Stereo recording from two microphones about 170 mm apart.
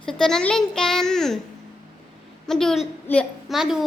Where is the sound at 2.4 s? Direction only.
Centre (ahead or behind).